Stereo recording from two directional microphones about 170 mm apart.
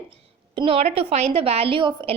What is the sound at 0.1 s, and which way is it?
A woman's voice, 30° right (ahead or behind).